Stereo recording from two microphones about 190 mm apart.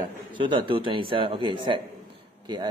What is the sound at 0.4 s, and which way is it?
Speech, 25° right (ahead or behind).